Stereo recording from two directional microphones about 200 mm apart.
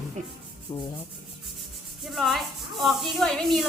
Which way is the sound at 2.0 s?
Centre (ahead or behind).